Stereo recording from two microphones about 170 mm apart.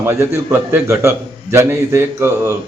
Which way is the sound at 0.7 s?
15° right (ahead or behind).